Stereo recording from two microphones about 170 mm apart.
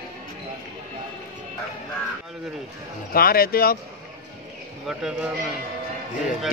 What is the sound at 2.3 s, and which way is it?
Speech, centre (ahead or behind).